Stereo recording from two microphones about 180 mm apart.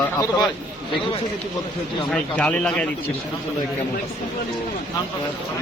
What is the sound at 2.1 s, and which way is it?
Speech, 5° left (ahead or behind).